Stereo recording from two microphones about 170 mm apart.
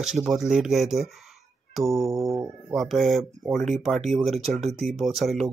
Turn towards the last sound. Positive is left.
turn(degrees=0)  # may be behind; listen again after turning